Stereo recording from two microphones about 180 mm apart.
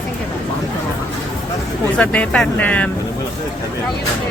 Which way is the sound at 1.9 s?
5° left (ahead or behind).